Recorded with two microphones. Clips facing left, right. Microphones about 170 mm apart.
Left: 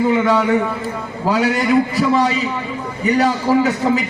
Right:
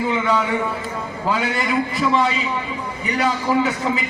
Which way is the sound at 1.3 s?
40° left (ahead or behind).